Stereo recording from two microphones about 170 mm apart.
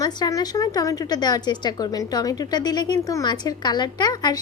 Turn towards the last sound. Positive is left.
turn(degrees=25)  # may be behind; listen again after turning